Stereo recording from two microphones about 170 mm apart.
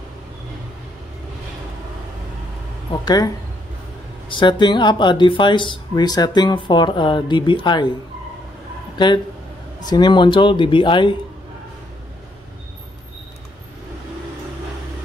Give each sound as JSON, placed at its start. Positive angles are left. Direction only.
{"t": 2.9, "sound": "speech", "side_deg": 20}
{"t": 4.3, "sound": "speech", "side_deg": 30}
{"t": 8.9, "sound": "speech", "side_deg": 25}